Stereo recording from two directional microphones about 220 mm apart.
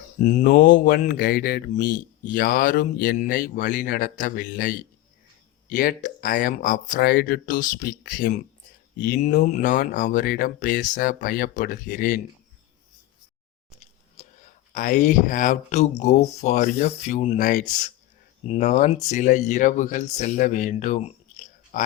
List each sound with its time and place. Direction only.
0.3 s speech: 40° left (ahead or behind)
14.7 s speech: 35° left (ahead or behind)